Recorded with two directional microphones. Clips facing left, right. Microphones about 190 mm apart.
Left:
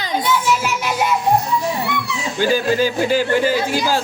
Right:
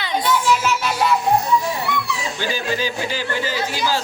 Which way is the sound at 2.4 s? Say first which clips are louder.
Left 9 dB; 50° left (ahead or behind).